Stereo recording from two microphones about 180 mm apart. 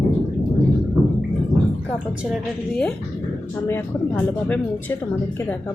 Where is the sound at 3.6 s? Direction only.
10° left (ahead or behind).